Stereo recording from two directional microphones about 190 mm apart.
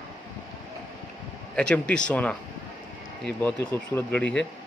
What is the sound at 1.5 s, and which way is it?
Speech, 5° left (ahead or behind).